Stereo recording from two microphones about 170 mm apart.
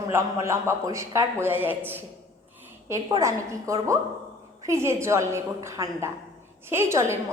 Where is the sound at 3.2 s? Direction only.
20° right (ahead or behind).